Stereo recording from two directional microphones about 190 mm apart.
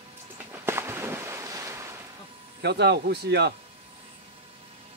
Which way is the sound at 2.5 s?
60° right (ahead or behind).